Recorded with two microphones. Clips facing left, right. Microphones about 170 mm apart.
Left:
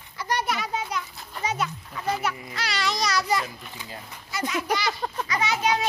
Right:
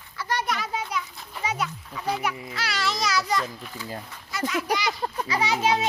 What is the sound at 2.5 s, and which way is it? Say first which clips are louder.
A child's voice: even; 5° right (ahead or behind).